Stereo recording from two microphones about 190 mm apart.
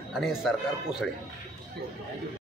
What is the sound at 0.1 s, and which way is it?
Speech, centre (ahead or behind).